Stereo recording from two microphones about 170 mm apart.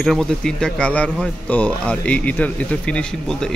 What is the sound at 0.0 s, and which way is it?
A man's voice, centre (ahead or behind).